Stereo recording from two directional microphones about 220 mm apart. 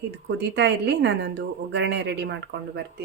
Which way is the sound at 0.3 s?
50° right (ahead or behind).